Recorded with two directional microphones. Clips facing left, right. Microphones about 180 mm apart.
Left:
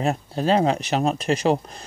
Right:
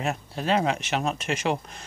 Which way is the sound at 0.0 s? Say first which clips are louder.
Left 6 dB; 35° left (ahead or behind).